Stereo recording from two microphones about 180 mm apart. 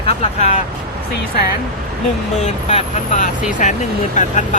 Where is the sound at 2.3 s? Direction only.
40° left (ahead or behind).